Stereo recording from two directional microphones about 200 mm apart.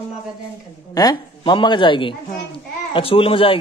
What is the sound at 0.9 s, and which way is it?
Speech, 20° left (ahead or behind).